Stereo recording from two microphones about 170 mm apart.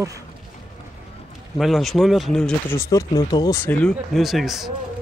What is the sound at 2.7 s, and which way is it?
Speech, 20° left (ahead or behind).